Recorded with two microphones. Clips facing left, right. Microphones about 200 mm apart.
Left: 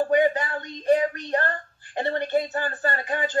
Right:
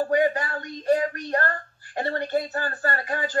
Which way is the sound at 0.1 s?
20° left (ahead or behind).